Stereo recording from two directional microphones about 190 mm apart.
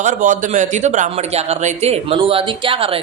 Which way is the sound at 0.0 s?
40° right (ahead or behind).